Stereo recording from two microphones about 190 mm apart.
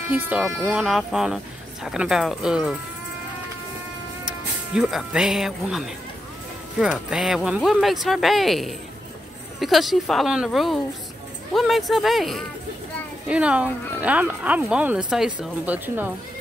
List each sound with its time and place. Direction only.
0.1 s speech: 5° right (ahead or behind)
4.3 s speech: 5° right (ahead or behind)